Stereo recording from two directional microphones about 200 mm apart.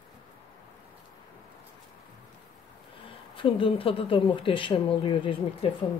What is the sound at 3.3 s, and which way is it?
Speech, 25° left (ahead or behind).